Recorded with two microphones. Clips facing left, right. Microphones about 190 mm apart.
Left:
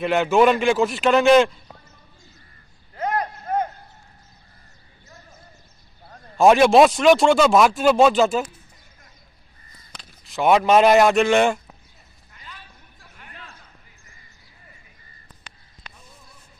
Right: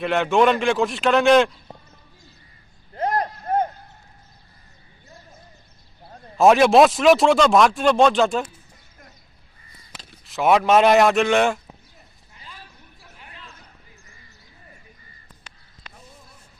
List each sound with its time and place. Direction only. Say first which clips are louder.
0.0 s speech: left 1 dB; centre (ahead or behind)
3.0 s vehicle: right 2 dB; 35° right (ahead or behind)
6.3 s speech: even; centre (ahead or behind)
9.9 s speech: left 1 dB; centre (ahead or behind)